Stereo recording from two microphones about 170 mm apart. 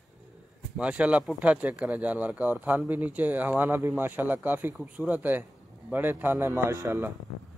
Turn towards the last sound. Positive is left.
turn(degrees=-15)  # may be behind; listen again after turning